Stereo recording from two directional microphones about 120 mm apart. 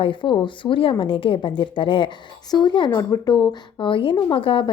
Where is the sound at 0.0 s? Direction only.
45° left (ahead or behind).